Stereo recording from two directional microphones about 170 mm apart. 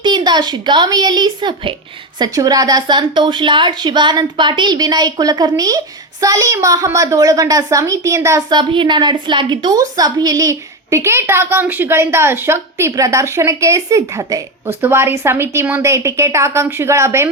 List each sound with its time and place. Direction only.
0.0 s a woman's voice: 25° right (ahead or behind)